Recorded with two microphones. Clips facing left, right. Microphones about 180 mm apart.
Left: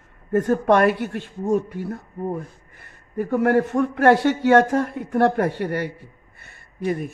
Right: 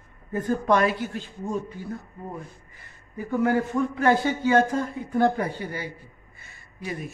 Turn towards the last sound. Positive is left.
turn(degrees=65)  # may be behind; listen again after turning